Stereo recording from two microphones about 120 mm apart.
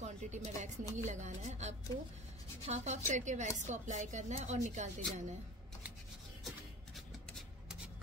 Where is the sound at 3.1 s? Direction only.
90° right.